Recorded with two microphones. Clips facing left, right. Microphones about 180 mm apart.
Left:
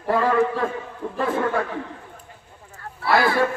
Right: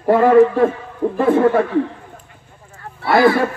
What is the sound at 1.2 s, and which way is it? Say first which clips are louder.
Speech: right 9 dB; 25° right (ahead or behind).